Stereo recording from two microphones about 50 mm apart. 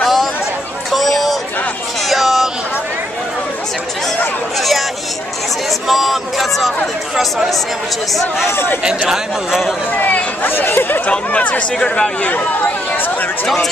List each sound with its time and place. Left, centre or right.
0.0 s chatter: centre
0.9 s a sound: centre
4.6 s chatter: centre
5.7 s a sound: centre
7.2 s a man's voice: centre
8.5 s speech: left
9.1 s a man's voice: centre
9.9 s speech: left
11.1 s speech: left
12.9 s speech: left